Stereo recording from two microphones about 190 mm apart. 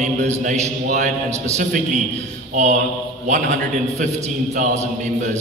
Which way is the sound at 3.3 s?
40° right (ahead or behind).